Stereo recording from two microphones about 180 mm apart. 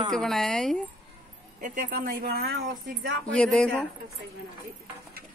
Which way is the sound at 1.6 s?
50° right (ahead or behind).